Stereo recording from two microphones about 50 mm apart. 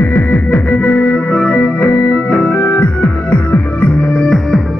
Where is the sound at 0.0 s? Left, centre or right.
Left.